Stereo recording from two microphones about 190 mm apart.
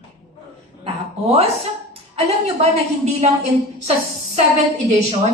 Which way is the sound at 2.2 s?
35° right (ahead or behind).